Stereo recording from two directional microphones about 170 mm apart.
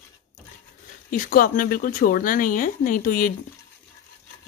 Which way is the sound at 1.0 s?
55° left (ahead or behind).